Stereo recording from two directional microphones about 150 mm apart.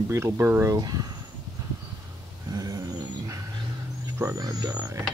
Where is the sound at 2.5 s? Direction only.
25° right (ahead or behind).